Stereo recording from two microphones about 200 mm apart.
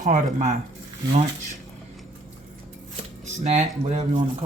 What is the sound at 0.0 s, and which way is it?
Speech, 40° right (ahead or behind).